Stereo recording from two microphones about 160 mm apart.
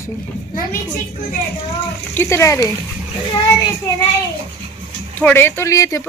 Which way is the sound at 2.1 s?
15° left (ahead or behind).